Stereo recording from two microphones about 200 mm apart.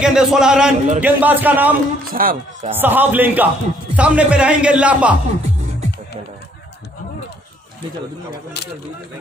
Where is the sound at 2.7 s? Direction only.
10° right (ahead or behind).